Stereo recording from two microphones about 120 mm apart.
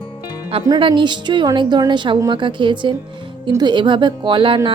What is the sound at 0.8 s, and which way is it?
A woman's voice, 40° right (ahead or behind).